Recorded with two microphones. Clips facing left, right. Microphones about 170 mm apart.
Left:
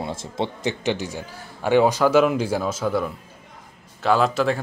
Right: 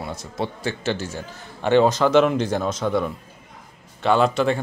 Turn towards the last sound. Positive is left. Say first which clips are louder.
# right 1 dB
turn(degrees=0)  # may be behind; listen again after turning